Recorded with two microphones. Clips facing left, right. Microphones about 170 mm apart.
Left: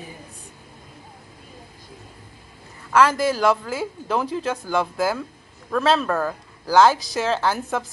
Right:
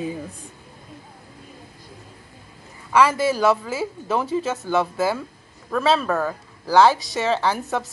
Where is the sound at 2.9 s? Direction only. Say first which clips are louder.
Even; 5° right (ahead or behind).